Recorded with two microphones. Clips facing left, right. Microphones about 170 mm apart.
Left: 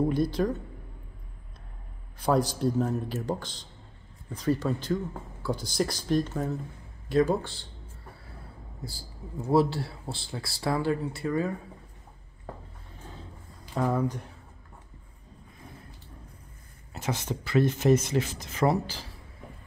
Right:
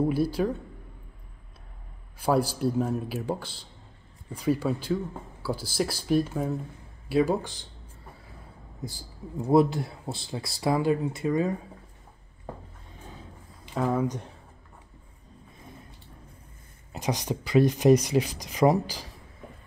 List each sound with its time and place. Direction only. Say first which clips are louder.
0.0 s speech: right 1 dB; 10° right (ahead or behind)
2.1 s speech: right 1 dB; 10° right (ahead or behind)
8.8 s speech: right 4 dB; 20° right (ahead or behind)
13.7 s speech: right 1 dB; centre (ahead or behind)
16.9 s speech: right 3 dB; 15° right (ahead or behind)